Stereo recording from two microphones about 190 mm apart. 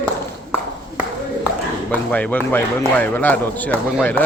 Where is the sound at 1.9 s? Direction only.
10° left (ahead or behind).